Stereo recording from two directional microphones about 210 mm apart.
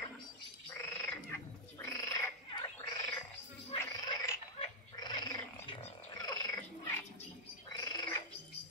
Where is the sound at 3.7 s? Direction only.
20° left (ahead or behind).